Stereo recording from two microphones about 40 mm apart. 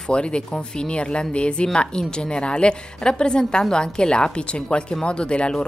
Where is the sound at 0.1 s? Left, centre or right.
Left.